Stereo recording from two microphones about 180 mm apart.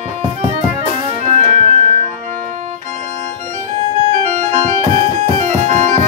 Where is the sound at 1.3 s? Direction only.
40° right (ahead or behind).